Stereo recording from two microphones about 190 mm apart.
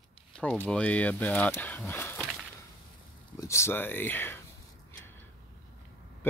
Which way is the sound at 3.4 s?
15° left (ahead or behind).